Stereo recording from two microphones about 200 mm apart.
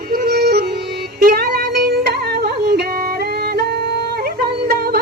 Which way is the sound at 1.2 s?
50° right (ahead or behind).